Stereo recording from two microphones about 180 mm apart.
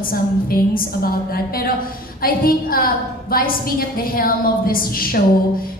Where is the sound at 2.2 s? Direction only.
55° left (ahead or behind).